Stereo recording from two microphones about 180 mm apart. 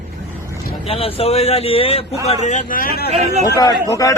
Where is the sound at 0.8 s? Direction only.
30° left (ahead or behind); by 3.1 s 60° left (ahead or behind).